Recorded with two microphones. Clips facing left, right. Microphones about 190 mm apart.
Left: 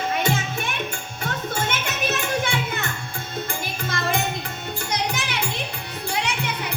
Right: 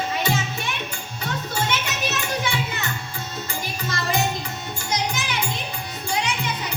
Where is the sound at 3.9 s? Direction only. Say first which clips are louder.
Right 1 dB; 55° left (ahead or behind).